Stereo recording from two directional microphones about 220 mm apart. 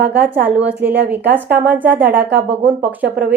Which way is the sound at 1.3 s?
10° right (ahead or behind).